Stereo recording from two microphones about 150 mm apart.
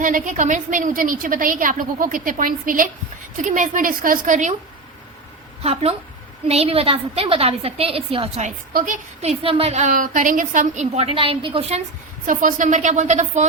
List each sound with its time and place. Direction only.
0.0 s a woman's voice: 60° right (ahead or behind)
5.6 s a woman's voice: 45° right (ahead or behind)
8.7 s a woman's voice: 65° right (ahead or behind)
9.2 s a woman's voice: 40° right (ahead or behind)
12.2 s speech: 65° right (ahead or behind)